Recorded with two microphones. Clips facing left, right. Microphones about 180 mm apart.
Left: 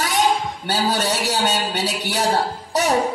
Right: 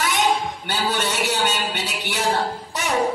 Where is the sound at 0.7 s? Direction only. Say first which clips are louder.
Left 4 dB; 40° left (ahead or behind).